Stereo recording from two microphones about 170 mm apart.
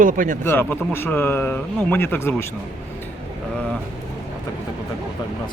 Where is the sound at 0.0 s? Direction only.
50° right (ahead or behind).